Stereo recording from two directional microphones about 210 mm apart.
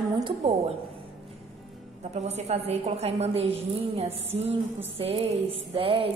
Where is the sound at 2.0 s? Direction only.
30° right (ahead or behind).